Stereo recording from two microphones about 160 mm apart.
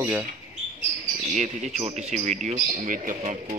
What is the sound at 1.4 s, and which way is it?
Speech, 45° right (ahead or behind).